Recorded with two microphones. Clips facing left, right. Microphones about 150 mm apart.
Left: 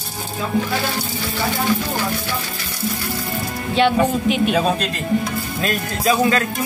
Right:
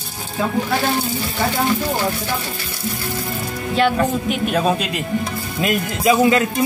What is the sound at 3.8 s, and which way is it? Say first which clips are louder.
A woman's voice: left 1 dB; centre (ahead or behind).